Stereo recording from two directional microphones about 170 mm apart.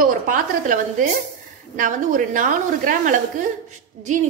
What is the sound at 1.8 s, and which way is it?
A woman's voice, 50° right (ahead or behind).